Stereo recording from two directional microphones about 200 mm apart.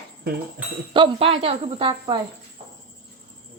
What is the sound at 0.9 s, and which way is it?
Speech, 25° right (ahead or behind).